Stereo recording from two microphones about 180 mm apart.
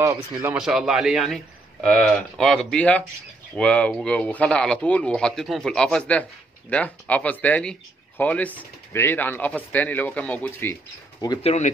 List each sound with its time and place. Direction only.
0.0 s speech: 15° right (ahead or behind)
0.6 s a man's voice: 5° right (ahead or behind); by 11.3 s 15° left (ahead or behind)
11.4 s speech: 40° left (ahead or behind)